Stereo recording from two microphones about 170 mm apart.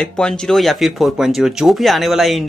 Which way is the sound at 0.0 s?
5° left (ahead or behind).